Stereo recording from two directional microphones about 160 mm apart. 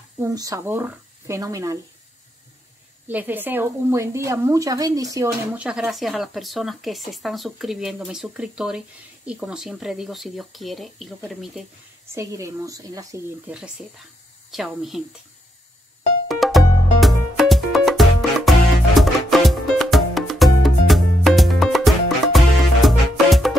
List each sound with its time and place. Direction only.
0.2 s speech: 20° right (ahead or behind)
3.1 s a woman's voice: 10° right (ahead or behind)
5.5 s speech: 5° right (ahead or behind)
12.1 s speech: 20° right (ahead or behind)
13.5 s speech: 5° right (ahead or behind)
16.3 s music: centre (ahead or behind)